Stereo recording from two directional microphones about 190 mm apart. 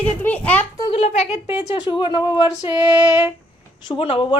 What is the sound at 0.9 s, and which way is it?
Speech, 35° left (ahead or behind).